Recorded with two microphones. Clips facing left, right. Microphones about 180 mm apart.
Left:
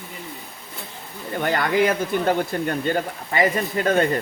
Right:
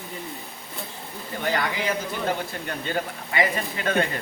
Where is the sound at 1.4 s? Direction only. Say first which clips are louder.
Left 7 dB; 50° left (ahead or behind).